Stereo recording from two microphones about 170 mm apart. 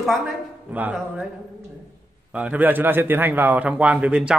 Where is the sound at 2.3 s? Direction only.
10° right (ahead or behind).